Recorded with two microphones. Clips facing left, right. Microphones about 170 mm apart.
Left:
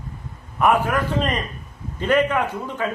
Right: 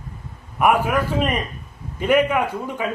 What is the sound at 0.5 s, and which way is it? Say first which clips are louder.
A man's voice: right 1 dB; 10° right (ahead or behind).